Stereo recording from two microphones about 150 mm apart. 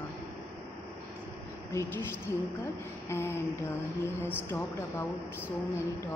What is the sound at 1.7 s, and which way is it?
Speech, 15° left (ahead or behind).